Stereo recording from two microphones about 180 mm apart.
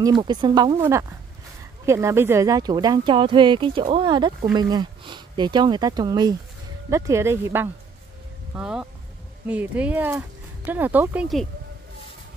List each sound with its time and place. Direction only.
0.0 s speech: 25° right (ahead or behind); by 11.4 s 5° right (ahead or behind)